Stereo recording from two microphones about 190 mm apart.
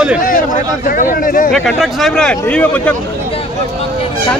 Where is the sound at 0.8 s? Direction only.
45° left (ahead or behind).